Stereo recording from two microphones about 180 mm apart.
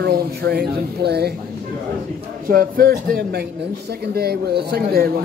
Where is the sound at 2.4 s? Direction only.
50° right (ahead or behind).